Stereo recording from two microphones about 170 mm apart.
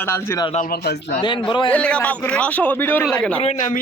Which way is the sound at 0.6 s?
65° left (ahead or behind).